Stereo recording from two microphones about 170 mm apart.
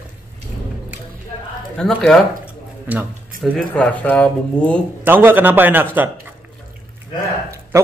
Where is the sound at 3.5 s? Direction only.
5° left (ahead or behind).